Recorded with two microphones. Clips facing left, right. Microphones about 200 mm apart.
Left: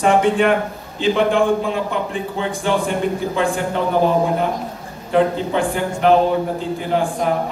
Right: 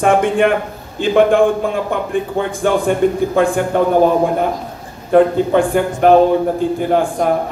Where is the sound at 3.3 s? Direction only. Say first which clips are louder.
Right 5 dB; 50° right (ahead or behind).